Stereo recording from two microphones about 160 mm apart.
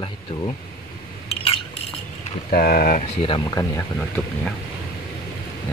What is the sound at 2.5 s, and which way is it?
Speech, 65° left (ahead or behind).